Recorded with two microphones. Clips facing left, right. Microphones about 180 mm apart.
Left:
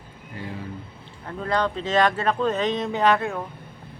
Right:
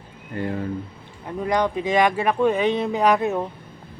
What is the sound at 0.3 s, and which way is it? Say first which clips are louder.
Speech: right 8 dB; 55° right (ahead or behind).